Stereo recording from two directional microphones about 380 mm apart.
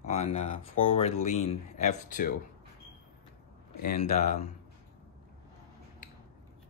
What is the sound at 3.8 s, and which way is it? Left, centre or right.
Speech, left.